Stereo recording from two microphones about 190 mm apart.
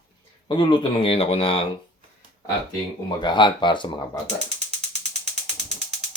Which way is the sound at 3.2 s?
25° left (ahead or behind).